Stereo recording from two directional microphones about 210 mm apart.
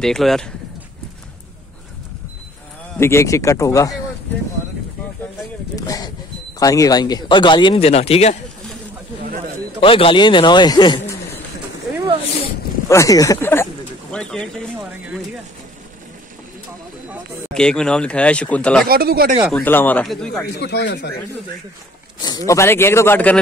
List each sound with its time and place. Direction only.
0.0 s speech: centre (ahead or behind)
3.0 s a man's voice: 15° left (ahead or behind)
5.8 s a man's voice: 15° left (ahead or behind)
9.2 s a sound: 40° right (ahead or behind)
9.8 s speech: 25° left (ahead or behind)
12.8 s a man's voice: 15° left (ahead or behind)
17.6 s speech: 5° left (ahead or behind)
18.9 s speech: 45° right (ahead or behind)
19.4 s speech: 5° left (ahead or behind)
20.5 s speech: 55° left (ahead or behind)
22.2 s a man's voice: 15° left (ahead or behind)